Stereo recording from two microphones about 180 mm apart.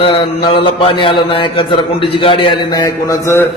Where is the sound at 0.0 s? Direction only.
30° left (ahead or behind).